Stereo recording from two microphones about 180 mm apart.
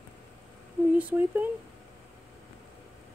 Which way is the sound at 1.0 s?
10° right (ahead or behind).